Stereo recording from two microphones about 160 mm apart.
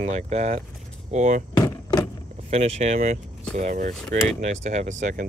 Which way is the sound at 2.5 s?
40° right (ahead or behind).